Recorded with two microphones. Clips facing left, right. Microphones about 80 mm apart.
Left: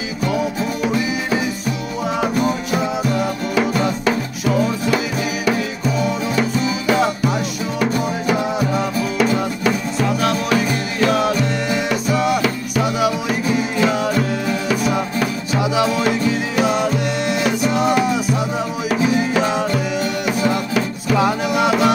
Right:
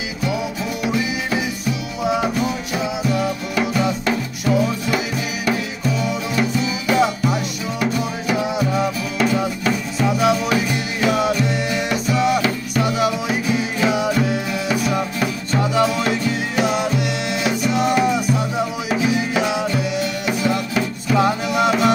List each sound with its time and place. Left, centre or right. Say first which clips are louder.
3.0 s music: left 1 dB; left
3.5 s music: left 2 dB; centre
6.9 s music: even; centre